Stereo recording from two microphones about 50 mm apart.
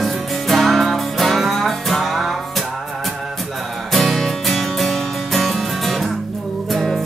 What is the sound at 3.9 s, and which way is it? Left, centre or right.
Music, centre.